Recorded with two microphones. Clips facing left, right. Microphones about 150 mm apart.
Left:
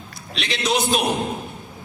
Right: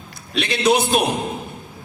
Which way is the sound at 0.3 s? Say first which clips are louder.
Right 5 dB; 55° right (ahead or behind).